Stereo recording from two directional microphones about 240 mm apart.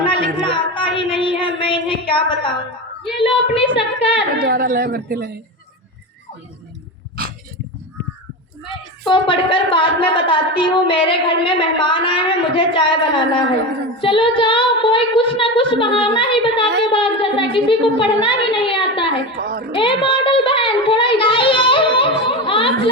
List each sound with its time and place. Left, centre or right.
0.0 s a sound: left
3.2 s a woman's voice: left
4.4 s speech: right
9.0 s a woman's voice: left
19.4 s speech: right
19.7 s a woman's voice: left